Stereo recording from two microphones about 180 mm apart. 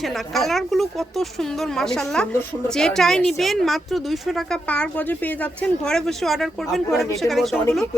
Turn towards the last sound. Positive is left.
turn(degrees=0)  # may be behind; listen again after turning